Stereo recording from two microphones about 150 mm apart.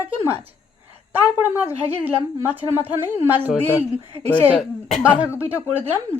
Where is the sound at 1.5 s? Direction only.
15° right (ahead or behind).